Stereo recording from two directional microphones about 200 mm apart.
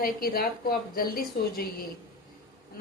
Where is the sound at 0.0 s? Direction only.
45° left (ahead or behind).